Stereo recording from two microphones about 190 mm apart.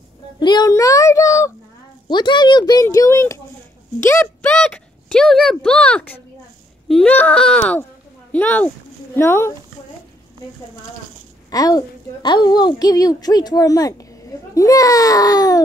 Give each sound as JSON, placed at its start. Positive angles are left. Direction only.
{"t": 0.4, "sound": "a sound", "side_deg": 20}
{"t": 2.0, "sound": "a woman's voice", "side_deg": 25}
{"t": 11.5, "sound": "a woman's voice", "side_deg": 20}